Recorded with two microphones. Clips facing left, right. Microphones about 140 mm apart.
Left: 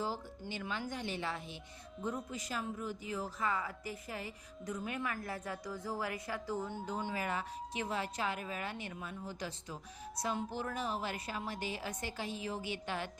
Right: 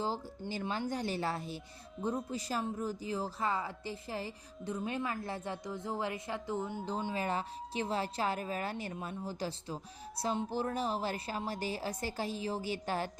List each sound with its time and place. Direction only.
0.0 s speech: 30° right (ahead or behind)